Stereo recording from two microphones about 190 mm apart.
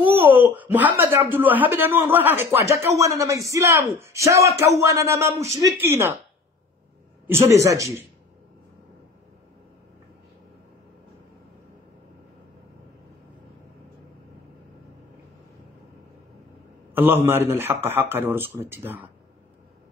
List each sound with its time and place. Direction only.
0.0 s a woman's voice: 10° right (ahead or behind)
7.2 s a woman's voice: 15° right (ahead or behind)
16.9 s a man's voice: 10° right (ahead or behind)